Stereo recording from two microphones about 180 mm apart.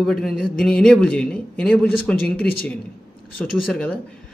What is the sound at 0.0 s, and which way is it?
A man's voice, centre (ahead or behind).